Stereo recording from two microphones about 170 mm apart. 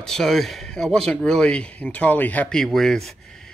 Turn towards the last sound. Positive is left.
turn(degrees=5)  # may be behind; listen again after turning